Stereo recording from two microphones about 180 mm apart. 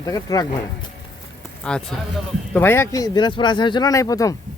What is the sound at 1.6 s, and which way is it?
Speech, 5° left (ahead or behind).